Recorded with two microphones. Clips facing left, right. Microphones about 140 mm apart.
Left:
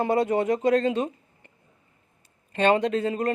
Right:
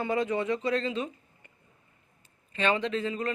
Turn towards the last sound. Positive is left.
turn(degrees=45)  # may be behind; listen again after turning